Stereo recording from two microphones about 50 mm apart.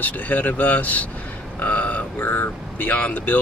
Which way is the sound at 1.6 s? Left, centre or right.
Left.